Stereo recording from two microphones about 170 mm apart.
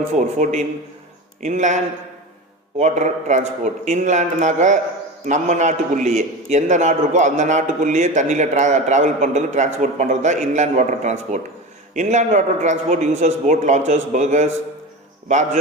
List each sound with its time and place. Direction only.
0.1 s a man's voice: 45° right (ahead or behind)